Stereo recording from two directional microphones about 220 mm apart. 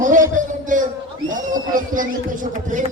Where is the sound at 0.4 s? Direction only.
35° right (ahead or behind).